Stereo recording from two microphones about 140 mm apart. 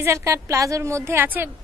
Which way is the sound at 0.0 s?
20° right (ahead or behind).